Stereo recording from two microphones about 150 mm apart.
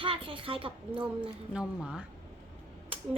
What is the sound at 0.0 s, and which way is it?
A child's voice, 35° right (ahead or behind).